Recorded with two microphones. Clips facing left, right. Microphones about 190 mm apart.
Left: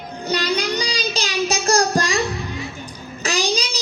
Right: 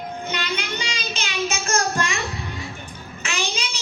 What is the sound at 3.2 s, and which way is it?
Child singing, 35° left (ahead or behind).